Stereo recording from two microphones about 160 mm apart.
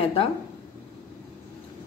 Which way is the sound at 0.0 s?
35° left (ahead or behind).